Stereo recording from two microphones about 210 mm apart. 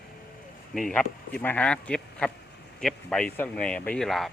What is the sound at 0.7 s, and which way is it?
Speech, centre (ahead or behind).